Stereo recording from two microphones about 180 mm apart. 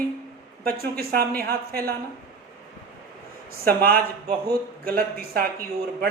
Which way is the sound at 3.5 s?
55° right (ahead or behind).